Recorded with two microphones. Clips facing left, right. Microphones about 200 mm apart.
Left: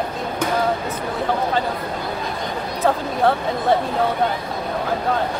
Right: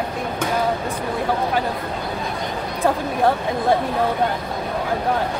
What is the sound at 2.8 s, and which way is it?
Speech, 10° right (ahead or behind).